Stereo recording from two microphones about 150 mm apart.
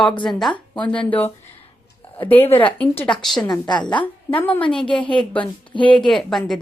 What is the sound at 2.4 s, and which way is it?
Speech, 35° left (ahead or behind).